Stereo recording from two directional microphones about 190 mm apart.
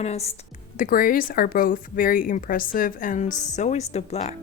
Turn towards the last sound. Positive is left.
turn(degrees=35)  # may be behind; listen again after turning